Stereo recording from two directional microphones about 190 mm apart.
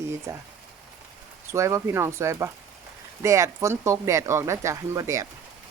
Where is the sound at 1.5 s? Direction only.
15° right (ahead or behind).